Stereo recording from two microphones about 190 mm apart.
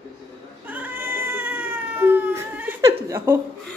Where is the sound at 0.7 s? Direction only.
10° right (ahead or behind).